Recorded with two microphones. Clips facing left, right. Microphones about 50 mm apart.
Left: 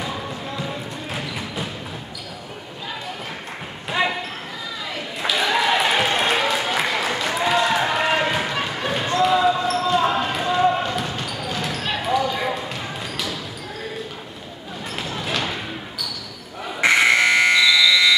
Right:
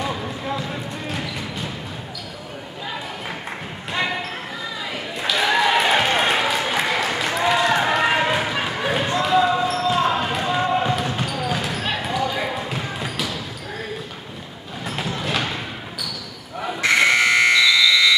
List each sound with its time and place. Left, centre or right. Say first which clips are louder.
5.2 s a sound: right 1 dB; centre
9.2 s basketball bounce: left 1 dB; centre
14.9 s basketball bounce: right 2 dB; centre
16.8 s buzzer: left 2 dB; left
17.2 s electric shaver: even; centre